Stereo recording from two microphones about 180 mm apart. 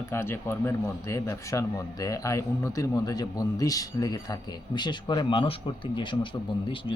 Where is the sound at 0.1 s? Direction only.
15° left (ahead or behind).